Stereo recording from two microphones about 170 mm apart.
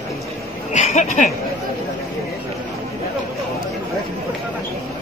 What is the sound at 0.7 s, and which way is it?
Speech, 45° left (ahead or behind).